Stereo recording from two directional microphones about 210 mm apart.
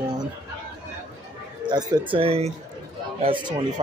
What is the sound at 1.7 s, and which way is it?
A man's voice, 20° right (ahead or behind).